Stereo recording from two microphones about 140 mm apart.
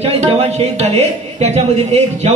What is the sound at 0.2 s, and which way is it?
Speech, 50° right (ahead or behind).